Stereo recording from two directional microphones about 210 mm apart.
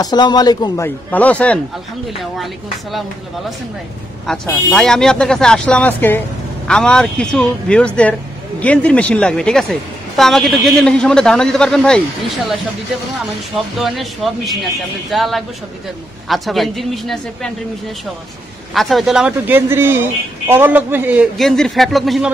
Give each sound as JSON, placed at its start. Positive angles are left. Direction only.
{"t": 0.0, "sound": "a man's voice", "side_deg": 20}
{"t": 4.3, "sound": "speech", "side_deg": 5}
{"t": 13.7, "sound": "speech", "side_deg": 0}
{"t": 18.7, "sound": "speech", "side_deg": 0}